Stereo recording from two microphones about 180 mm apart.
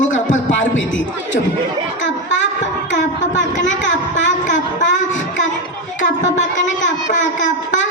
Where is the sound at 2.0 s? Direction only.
90° left.